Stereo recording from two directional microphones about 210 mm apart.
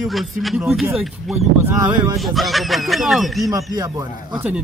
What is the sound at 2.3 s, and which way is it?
Speech, centre (ahead or behind).